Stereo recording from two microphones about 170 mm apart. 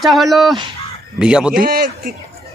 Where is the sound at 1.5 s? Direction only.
60° right (ahead or behind).